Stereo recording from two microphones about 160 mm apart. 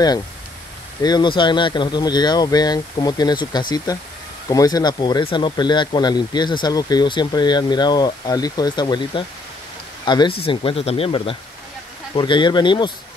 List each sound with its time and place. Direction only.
1.0 s speech: 25° left (ahead or behind)